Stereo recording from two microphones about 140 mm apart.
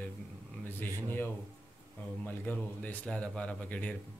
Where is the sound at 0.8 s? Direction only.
15° left (ahead or behind).